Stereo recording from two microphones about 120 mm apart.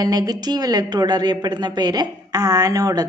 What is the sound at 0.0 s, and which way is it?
A woman's voice, 30° right (ahead or behind).